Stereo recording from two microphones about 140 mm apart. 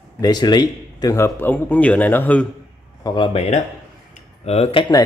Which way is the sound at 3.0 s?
30° left (ahead or behind).